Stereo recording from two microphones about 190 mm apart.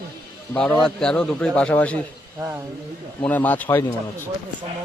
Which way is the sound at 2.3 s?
10° right (ahead or behind).